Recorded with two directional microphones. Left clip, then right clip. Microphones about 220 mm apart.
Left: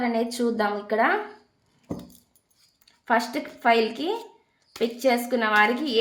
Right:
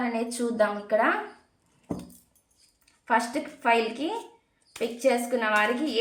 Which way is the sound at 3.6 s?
55° left (ahead or behind).